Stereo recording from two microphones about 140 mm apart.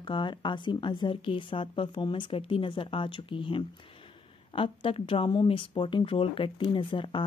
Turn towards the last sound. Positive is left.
turn(degrees=35)  # may be behind; listen again after turning